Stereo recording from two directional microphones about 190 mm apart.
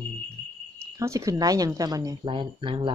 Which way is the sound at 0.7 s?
15° right (ahead or behind).